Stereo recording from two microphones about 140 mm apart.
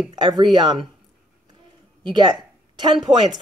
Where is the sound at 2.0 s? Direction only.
35° right (ahead or behind).